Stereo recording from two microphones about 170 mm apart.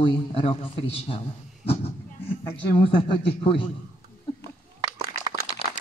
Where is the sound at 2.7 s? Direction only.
35° left (ahead or behind).